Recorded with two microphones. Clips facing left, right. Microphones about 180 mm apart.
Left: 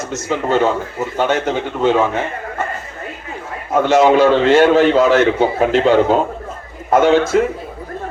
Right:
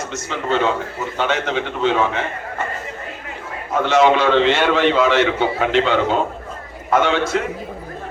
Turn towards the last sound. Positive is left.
turn(degrees=45)  # may be behind; listen again after turning